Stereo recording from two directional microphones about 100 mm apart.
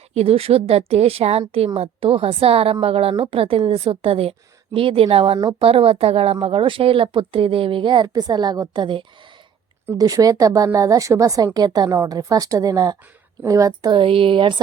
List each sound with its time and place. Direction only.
0.1 s a woman's voice: 80° right
6.4 s speech: 60° right (ahead or behind); by 8.8 s 40° right (ahead or behind)
8.8 s speech: 55° right (ahead or behind)
10.0 s a woman's voice: 35° right (ahead or behind)
13.9 s speech: 60° right (ahead or behind)